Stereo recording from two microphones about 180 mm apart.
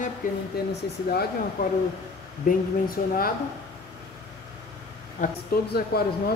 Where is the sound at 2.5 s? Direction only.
55° left (ahead or behind).